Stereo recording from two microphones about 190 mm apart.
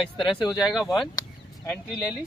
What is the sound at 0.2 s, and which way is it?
Speech, 25° left (ahead or behind).